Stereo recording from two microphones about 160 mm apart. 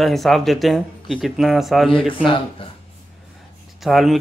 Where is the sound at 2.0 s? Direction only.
30° left (ahead or behind).